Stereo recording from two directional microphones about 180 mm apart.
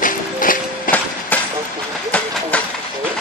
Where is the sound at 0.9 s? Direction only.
50° left (ahead or behind).